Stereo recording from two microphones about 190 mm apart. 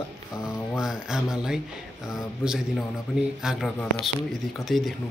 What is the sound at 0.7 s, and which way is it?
Speech, 5° right (ahead or behind).